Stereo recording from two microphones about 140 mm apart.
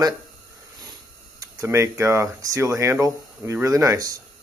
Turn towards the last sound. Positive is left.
turn(degrees=-25)  # may be behind; listen again after turning